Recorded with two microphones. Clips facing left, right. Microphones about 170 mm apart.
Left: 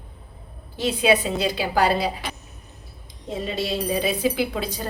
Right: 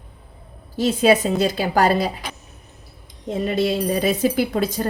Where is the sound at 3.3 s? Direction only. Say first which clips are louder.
Right 6 dB; 50° right (ahead or behind).